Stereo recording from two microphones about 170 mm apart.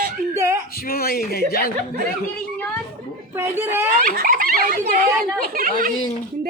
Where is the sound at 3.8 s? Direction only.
55° right (ahead or behind).